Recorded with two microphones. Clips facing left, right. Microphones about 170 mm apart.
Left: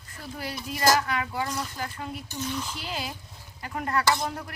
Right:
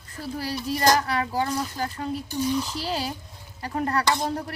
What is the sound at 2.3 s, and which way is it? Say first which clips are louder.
Speech: right 8 dB; 10° right (ahead or behind).